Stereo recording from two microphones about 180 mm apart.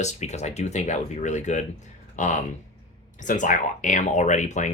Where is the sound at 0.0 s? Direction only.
40° left (ahead or behind).